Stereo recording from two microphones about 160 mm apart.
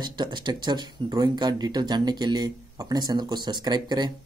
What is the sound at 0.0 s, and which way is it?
Speech, 30° right (ahead or behind).